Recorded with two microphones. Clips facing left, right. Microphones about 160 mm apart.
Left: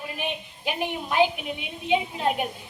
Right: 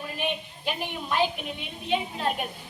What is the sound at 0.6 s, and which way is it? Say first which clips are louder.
A woman's voice: left 2 dB; 15° left (ahead or behind).